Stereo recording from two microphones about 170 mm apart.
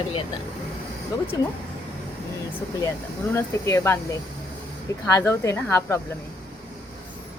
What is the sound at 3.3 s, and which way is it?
Speech, 15° left (ahead or behind).